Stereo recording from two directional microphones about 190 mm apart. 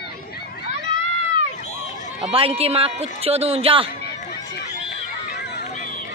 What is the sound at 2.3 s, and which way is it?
A man's voice, 30° right (ahead or behind).